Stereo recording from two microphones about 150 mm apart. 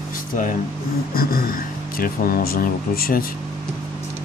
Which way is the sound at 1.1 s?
75° left (ahead or behind).